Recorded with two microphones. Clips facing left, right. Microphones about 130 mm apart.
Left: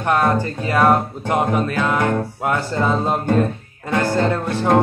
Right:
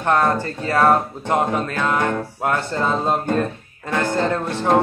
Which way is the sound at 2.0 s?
20° left (ahead or behind).